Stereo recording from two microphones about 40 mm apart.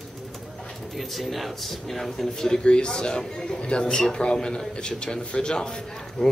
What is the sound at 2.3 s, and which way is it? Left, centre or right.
A man's voice, centre.